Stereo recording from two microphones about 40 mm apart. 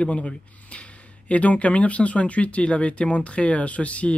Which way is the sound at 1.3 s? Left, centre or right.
Left.